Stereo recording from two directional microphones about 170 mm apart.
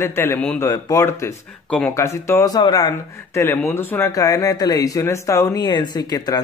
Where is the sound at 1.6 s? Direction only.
5° left (ahead or behind).